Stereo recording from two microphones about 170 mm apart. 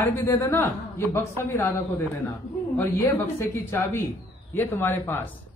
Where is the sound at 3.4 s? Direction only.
15° left (ahead or behind).